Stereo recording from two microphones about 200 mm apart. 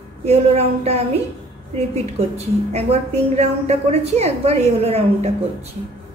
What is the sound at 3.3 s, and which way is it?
A woman's voice, 30° right (ahead or behind).